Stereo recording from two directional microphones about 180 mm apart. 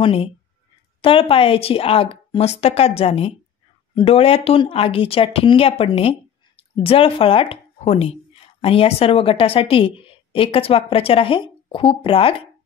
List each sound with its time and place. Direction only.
0.0 s speech: 30° left (ahead or behind)